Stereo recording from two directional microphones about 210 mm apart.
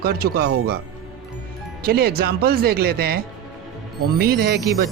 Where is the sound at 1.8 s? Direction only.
45° right (ahead or behind).